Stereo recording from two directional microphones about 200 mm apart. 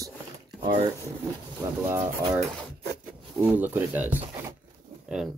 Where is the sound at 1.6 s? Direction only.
20° right (ahead or behind).